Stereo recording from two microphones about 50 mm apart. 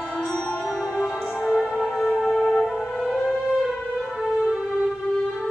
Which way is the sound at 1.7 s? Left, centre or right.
Centre.